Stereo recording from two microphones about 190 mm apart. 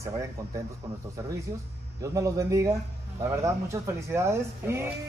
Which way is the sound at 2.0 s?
15° right (ahead or behind).